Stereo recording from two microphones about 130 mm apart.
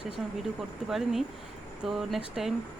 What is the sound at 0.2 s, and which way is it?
A woman's voice, 5° right (ahead or behind).